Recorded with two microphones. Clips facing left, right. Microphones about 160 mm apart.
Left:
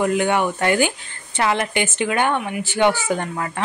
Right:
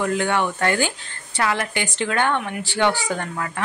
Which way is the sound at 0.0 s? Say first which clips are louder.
Left 3 dB; 15° left (ahead or behind).